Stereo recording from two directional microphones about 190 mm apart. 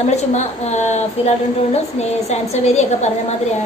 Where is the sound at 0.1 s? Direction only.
35° left (ahead or behind).